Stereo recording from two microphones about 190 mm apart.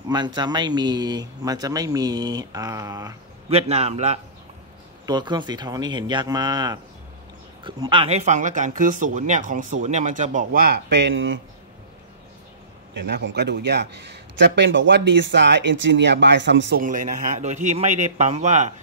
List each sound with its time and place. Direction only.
0.1 s speech: 20° right (ahead or behind)
3.4 s a man's voice: 35° right (ahead or behind)
5.0 s speech: 20° right (ahead or behind); by 11.4 s 80° right
13.0 s a man's voice: 60° right (ahead or behind)
16.8 s a man's voice: 45° right (ahead or behind)